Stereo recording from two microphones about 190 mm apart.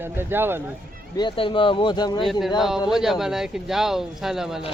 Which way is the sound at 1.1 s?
25° left (ahead or behind).